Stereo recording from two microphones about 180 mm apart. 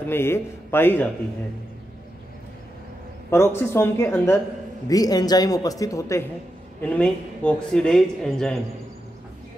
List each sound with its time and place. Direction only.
0.1 s speech: 15° left (ahead or behind)
3.3 s speech: 15° left (ahead or behind)